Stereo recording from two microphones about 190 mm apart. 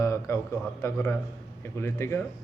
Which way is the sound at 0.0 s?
15° left (ahead or behind).